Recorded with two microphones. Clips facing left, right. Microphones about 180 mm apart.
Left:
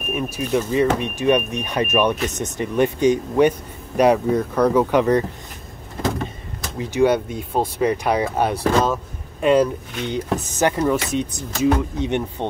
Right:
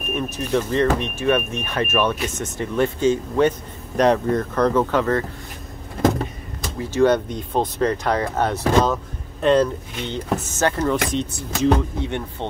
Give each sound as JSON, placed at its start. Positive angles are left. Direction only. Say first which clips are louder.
{"t": 0.1, "sound": "speech", "louder": "left 1 dB", "side_deg": 10}
{"t": 6.8, "sound": "speech", "louder": "even", "side_deg": 15}